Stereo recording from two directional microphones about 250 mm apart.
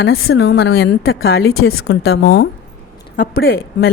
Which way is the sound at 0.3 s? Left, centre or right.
Left.